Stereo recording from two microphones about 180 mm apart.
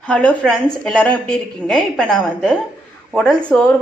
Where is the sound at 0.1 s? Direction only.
5° left (ahead or behind).